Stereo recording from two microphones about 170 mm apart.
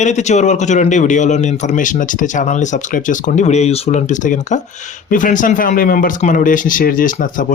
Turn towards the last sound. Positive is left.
turn(degrees=50)  # may be behind; listen again after turning